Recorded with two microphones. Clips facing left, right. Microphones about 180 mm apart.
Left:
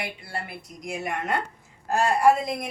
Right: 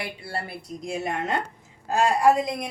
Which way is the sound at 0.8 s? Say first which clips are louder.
Right 2 dB; 25° right (ahead or behind).